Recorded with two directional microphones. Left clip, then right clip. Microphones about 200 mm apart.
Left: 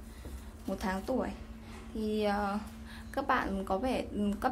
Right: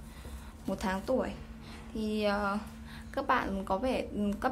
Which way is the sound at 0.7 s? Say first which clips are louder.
Right 2 dB; 5° right (ahead or behind).